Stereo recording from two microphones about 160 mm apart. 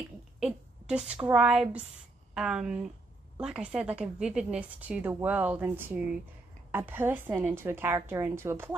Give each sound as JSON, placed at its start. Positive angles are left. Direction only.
{"t": 0.4, "sound": "a woman's voice", "side_deg": -5}